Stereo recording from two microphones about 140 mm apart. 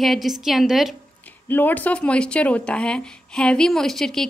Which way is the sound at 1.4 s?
15° left (ahead or behind).